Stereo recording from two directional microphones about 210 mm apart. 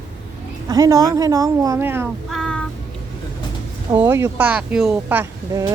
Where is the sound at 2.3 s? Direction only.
Centre (ahead or behind).